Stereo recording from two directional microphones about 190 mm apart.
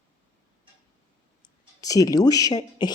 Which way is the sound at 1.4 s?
20° left (ahead or behind).